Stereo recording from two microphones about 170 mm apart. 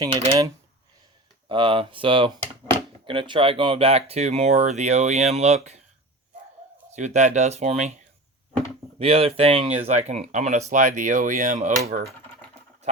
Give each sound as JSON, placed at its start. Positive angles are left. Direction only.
{"t": 0.0, "sound": "speech", "side_deg": -35}
{"t": 1.5, "sound": "speech", "side_deg": -30}
{"t": 6.9, "sound": "speech", "side_deg": -45}
{"t": 9.0, "sound": "speech", "side_deg": -35}